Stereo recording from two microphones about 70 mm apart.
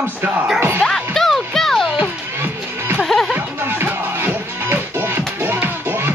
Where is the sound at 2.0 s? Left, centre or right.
Right.